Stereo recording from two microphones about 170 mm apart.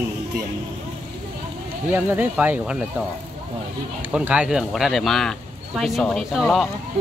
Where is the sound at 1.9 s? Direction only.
10° right (ahead or behind).